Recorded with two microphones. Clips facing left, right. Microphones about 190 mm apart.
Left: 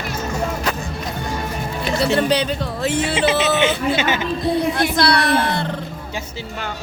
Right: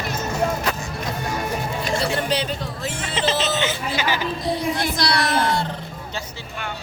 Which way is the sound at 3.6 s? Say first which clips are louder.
Left 6 dB; 25° left (ahead or behind).